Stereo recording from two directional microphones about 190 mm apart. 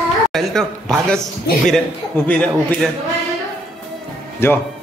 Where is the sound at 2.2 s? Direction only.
10° left (ahead or behind).